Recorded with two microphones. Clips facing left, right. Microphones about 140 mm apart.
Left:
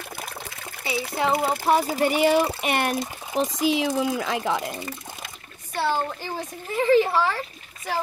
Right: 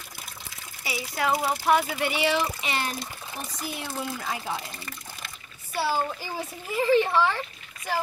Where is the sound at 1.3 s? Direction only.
55° left (ahead or behind).